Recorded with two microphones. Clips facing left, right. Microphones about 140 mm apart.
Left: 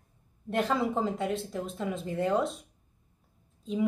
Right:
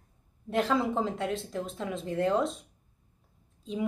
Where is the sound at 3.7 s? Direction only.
Centre (ahead or behind).